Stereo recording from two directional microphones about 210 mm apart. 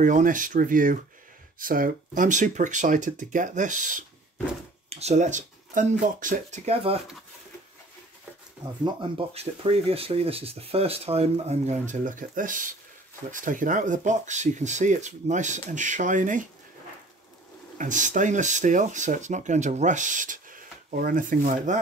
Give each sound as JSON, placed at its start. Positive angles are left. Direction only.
{"t": 0.0, "sound": "speech", "side_deg": -40}
{"t": 8.6, "sound": "speech", "side_deg": -20}
{"t": 17.7, "sound": "speech", "side_deg": -35}